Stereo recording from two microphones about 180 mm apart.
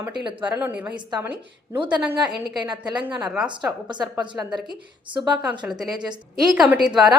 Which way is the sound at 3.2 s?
5° right (ahead or behind).